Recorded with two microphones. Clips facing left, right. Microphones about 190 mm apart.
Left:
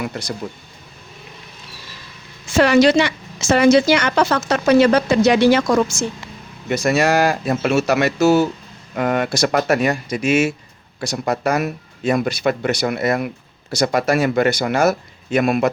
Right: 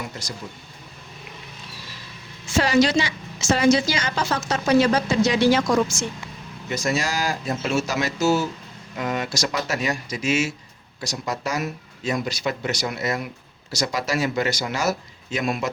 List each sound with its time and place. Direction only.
0.0 s speech: 65° left (ahead or behind)
2.6 s speech: 65° left (ahead or behind)